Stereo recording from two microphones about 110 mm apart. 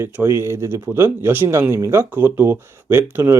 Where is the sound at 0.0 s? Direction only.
20° right (ahead or behind).